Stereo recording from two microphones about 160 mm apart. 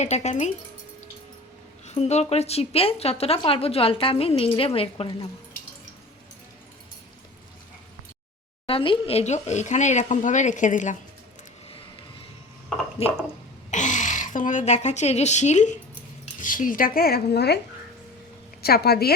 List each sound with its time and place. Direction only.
0.0 s speech: 45° left (ahead or behind)
1.9 s a woman's voice: 45° left (ahead or behind)
8.6 s speech: 35° left (ahead or behind); by 10.9 s 50° left (ahead or behind)
13.0 s a woman's voice: 40° left (ahead or behind)
13.7 s speech: 50° left (ahead or behind); by 17.6 s 90° left
18.6 s speech: 75° left (ahead or behind)